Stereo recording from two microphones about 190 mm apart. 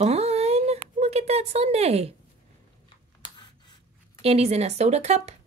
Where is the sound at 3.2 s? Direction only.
25° left (ahead or behind).